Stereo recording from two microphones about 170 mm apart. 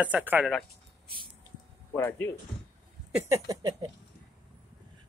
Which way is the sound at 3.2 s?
20° right (ahead or behind).